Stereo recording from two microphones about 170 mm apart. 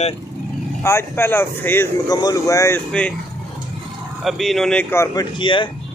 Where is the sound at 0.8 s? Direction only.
15° left (ahead or behind).